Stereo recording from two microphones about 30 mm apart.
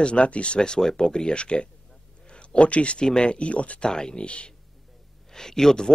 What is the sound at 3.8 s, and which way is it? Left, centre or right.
Speech, left.